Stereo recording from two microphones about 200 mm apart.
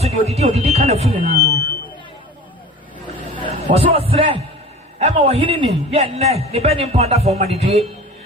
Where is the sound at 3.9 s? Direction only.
30° right (ahead or behind).